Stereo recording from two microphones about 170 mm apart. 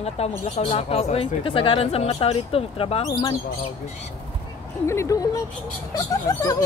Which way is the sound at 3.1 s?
25° left (ahead or behind).